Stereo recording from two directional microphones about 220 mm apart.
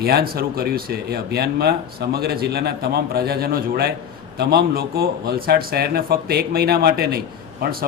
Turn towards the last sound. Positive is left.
turn(degrees=-45)  # may be behind; listen again after turning